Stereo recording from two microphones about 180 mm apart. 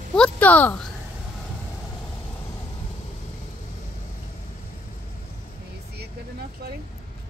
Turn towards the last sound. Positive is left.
turn(degrees=-60)  # may be behind; listen again after turning